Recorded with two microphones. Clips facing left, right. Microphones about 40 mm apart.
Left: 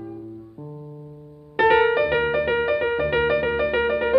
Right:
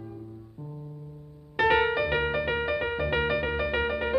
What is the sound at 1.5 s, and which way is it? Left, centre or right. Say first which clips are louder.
Music: left 6 dB; centre.